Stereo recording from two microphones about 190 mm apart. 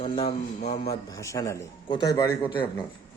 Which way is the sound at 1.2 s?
15° left (ahead or behind).